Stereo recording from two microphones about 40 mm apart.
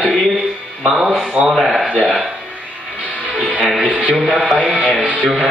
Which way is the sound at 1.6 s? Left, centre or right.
Centre.